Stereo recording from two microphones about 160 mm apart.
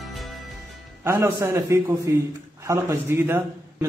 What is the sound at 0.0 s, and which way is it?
Music, centre (ahead or behind).